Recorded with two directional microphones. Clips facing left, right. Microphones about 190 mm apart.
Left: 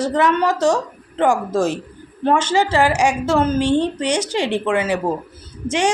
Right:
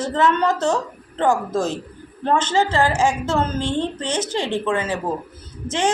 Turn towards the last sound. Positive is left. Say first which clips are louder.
# left 2 dB
turn(degrees=15)  # may be behind; listen again after turning